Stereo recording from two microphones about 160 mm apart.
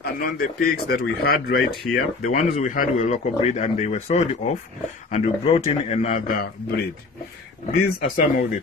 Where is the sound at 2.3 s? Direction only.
50° left (ahead or behind).